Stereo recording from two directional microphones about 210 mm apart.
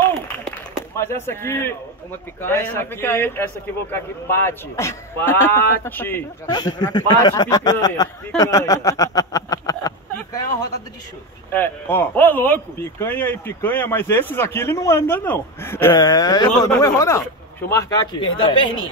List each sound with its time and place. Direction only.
0.5 s chop: 10° left (ahead or behind)
2.4 s speech: 10° left (ahead or behind)
6.5 s speech: 20° left (ahead or behind)
8.4 s a sound: 15° left (ahead or behind)
11.5 s speech: 10° left (ahead or behind)